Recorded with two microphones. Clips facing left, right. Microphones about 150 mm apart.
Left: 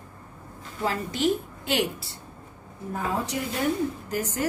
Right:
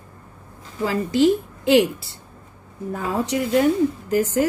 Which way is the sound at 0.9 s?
90° right.